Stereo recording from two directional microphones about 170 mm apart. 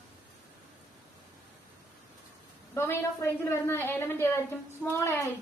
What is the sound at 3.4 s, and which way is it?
A woman's voice, 15° left (ahead or behind).